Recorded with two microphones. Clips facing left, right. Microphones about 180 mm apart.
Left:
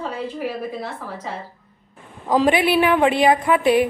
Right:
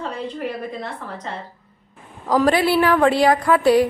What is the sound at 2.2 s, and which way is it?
A woman's voice, 20° left (ahead or behind).